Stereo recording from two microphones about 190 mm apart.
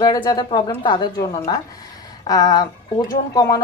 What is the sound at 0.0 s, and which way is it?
A woman's voice, 20° left (ahead or behind).